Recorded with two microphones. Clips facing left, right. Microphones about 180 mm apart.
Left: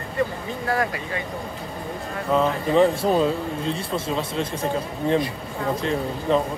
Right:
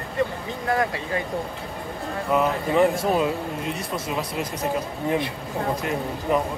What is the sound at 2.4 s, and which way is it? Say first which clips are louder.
Speech: left 2 dB; 30° left (ahead or behind).